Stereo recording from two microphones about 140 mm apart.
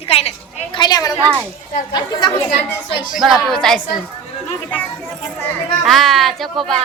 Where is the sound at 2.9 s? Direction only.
35° left (ahead or behind).